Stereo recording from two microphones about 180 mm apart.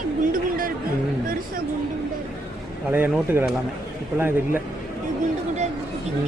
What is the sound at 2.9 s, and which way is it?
Speech, 10° right (ahead or behind).